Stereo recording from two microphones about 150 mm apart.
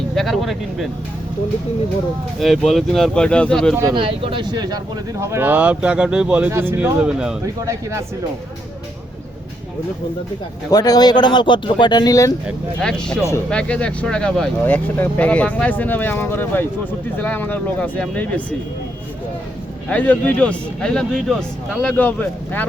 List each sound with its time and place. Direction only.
0.2 s speech: centre (ahead or behind)
2.4 s speech: centre (ahead or behind)
3.9 s speech: 35° right (ahead or behind)
5.2 s speech: 15° right (ahead or behind)
7.4 s speech: 20° right (ahead or behind)
10.7 s speech: 25° left (ahead or behind)
12.8 s speech: 5° left (ahead or behind)
19.9 s speech: 10° left (ahead or behind)